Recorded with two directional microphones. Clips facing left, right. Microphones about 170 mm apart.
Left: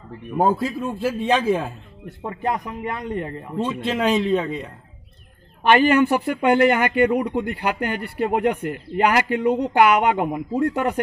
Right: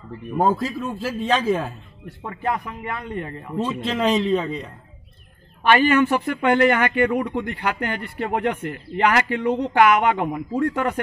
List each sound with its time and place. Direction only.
0.4 s speech: 5° left (ahead or behind)
2.0 s speech: 20° left (ahead or behind)
3.0 s a man's voice: 35° left (ahead or behind)
3.8 s speech: 5° left (ahead or behind)
5.9 s speech: 15° left (ahead or behind)